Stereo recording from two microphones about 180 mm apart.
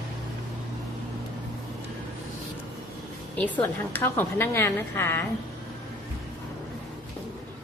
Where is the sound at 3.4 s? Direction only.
10° left (ahead or behind).